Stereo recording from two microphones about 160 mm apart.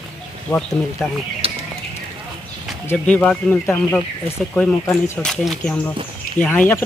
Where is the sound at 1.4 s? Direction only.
35° right (ahead or behind).